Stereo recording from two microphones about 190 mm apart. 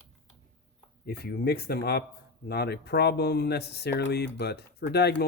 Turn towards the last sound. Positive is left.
turn(degrees=60)  # may be behind; listen again after turning